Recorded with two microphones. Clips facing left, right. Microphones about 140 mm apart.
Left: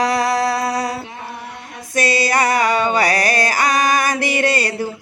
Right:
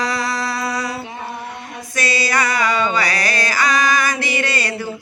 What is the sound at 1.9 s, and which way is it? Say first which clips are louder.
Music: left 3 dB; 55° left (ahead or behind).